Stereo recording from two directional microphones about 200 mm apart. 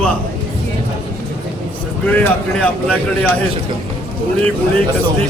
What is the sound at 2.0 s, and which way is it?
A man's voice, 10° left (ahead or behind).